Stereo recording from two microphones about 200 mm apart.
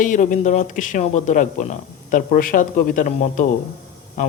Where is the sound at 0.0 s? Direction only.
40° left (ahead or behind).